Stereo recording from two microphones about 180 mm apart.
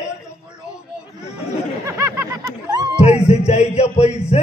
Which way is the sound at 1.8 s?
15° right (ahead or behind).